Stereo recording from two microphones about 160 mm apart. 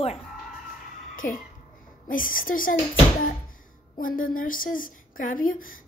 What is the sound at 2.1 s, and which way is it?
Speech, 60° left (ahead or behind).